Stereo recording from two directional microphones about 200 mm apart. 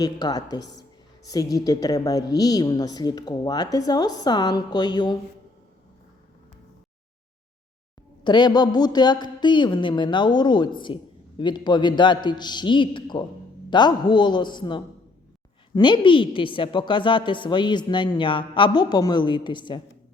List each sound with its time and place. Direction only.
0.0 s speech: 20° left (ahead or behind)
8.2 s speech: 20° left (ahead or behind)